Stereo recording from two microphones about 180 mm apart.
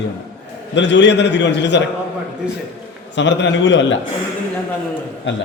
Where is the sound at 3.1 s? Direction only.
80° left.